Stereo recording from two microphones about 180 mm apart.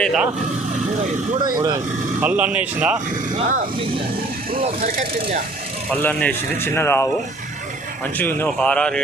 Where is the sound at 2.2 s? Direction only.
10° right (ahead or behind).